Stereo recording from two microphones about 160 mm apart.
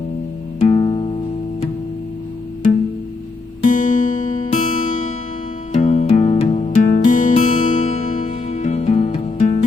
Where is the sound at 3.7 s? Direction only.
55° left (ahead or behind).